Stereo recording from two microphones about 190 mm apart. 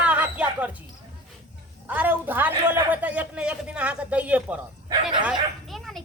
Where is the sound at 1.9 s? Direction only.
10° right (ahead or behind).